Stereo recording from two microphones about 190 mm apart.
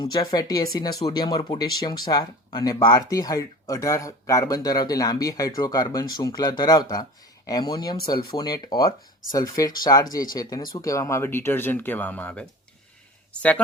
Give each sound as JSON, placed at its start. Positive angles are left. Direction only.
{"t": 0.0, "sound": "speech", "side_deg": 20}